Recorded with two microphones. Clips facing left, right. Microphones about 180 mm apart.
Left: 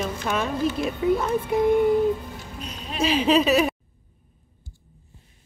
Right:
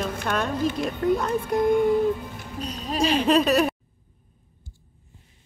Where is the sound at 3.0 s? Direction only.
5° left (ahead or behind).